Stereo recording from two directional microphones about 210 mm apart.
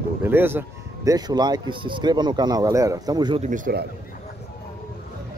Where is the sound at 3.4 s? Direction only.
40° right (ahead or behind).